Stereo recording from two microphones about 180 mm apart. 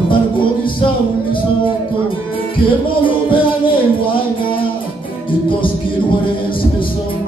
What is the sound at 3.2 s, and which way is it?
Music, 30° left (ahead or behind).